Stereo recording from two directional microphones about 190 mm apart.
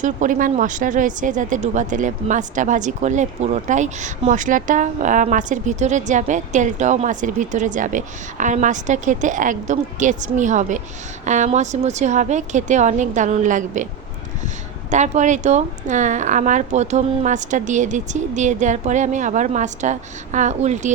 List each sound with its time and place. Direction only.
0.0 s speech: 45° right (ahead or behind)
14.8 s speech: 40° right (ahead or behind)